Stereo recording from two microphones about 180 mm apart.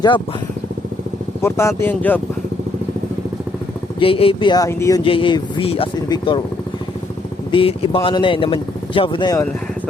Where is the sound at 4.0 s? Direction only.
30° left (ahead or behind).